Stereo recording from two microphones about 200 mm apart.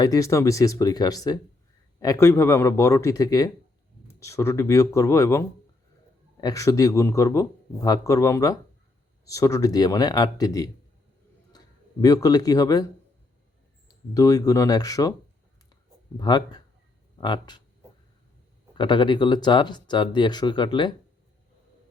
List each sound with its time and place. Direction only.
0.0 s speech: 15° left (ahead or behind)
14.1 s speech: 15° left (ahead or behind)
16.1 s speech: 20° left (ahead or behind)
18.7 s speech: 25° left (ahead or behind)